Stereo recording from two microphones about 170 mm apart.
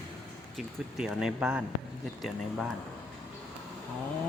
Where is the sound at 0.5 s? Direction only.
5° right (ahead or behind).